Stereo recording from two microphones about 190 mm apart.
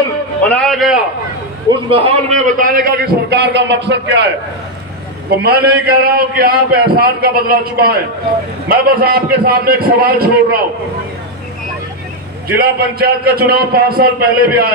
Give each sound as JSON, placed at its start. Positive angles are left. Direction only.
{"t": 0.4, "sound": "a sound", "side_deg": 5}
{"t": 1.7, "sound": "a man's voice", "side_deg": -30}
{"t": 5.4, "sound": "a man's voice", "side_deg": -60}
{"t": 12.5, "sound": "a man's voice", "side_deg": -55}